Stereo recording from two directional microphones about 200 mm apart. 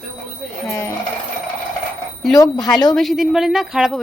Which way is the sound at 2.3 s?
20° left (ahead or behind).